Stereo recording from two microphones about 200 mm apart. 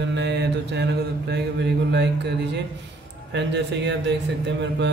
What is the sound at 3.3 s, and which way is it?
Mantra, 60° right (ahead or behind).